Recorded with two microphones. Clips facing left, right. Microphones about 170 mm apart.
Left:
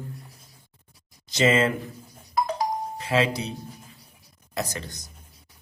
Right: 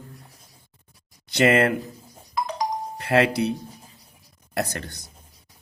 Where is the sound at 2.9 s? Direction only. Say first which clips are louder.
Right 5 dB; 60° right (ahead or behind).